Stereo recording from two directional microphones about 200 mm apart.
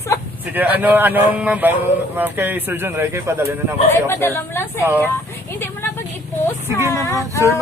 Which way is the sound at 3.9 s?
10° left (ahead or behind).